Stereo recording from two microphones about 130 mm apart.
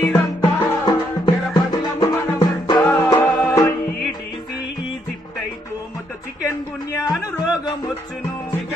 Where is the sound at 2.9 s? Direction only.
15° left (ahead or behind).